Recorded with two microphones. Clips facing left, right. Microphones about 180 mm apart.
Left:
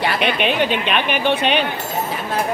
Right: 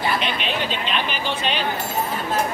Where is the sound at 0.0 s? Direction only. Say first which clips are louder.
Left 5 dB; 65° left (ahead or behind).